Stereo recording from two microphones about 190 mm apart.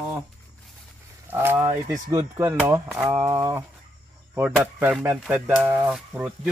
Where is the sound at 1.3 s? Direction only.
10° right (ahead or behind).